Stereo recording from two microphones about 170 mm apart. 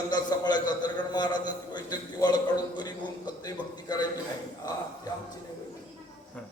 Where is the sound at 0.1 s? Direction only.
25° left (ahead or behind).